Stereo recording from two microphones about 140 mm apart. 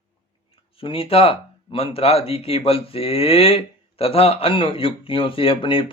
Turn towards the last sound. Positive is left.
turn(degrees=40)  # may be behind; listen again after turning